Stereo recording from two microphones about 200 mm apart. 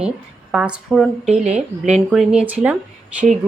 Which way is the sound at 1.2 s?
35° right (ahead or behind).